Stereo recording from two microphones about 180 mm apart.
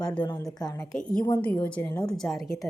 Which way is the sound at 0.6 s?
20° left (ahead or behind).